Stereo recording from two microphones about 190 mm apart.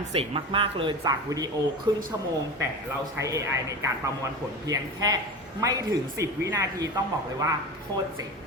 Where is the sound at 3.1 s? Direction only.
15° right (ahead or behind).